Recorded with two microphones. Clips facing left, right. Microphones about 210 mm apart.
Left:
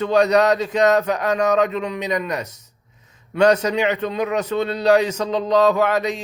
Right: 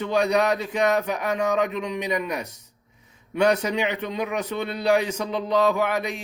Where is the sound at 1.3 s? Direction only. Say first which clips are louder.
Left 5 dB; 75° left (ahead or behind).